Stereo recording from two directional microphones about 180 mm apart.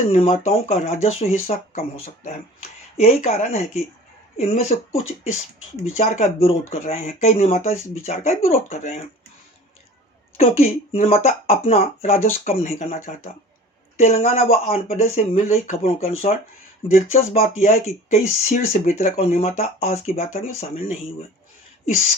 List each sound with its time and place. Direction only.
0.1 s speech: 40° left (ahead or behind)
10.3 s speech: 40° left (ahead or behind)
13.9 s speech: 40° left (ahead or behind)